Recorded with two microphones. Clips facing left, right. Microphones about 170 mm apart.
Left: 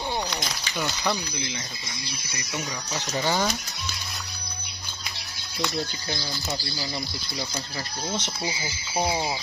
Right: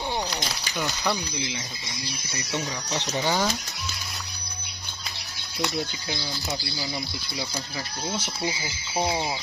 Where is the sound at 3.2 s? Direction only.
10° right (ahead or behind).